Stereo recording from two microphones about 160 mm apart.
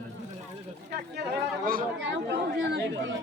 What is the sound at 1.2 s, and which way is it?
Speech, 75° right (ahead or behind).